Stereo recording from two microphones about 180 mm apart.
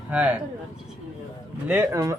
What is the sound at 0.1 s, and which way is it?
Speech, 10° right (ahead or behind).